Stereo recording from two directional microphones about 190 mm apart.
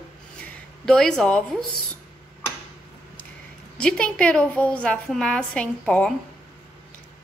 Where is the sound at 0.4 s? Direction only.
5° left (ahead or behind).